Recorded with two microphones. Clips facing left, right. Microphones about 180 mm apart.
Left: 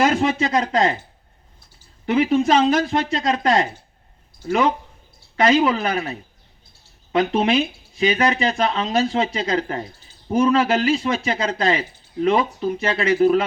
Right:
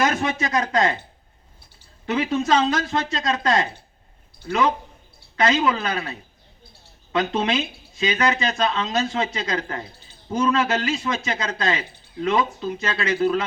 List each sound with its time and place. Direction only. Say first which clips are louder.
0.0 s speech: left 4 dB; 30° left (ahead or behind)
2.0 s speech: left 4 dB; 25° left (ahead or behind)
5.4 s speech: left 4 dB; 25° left (ahead or behind)